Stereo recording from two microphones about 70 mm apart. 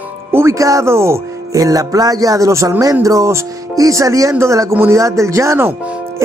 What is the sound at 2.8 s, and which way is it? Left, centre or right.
Speech, right.